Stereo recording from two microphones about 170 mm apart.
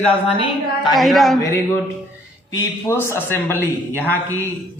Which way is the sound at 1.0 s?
Centre (ahead or behind).